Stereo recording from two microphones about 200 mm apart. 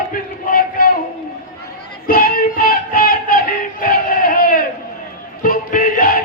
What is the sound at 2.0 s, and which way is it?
Music, 45° left (ahead or behind).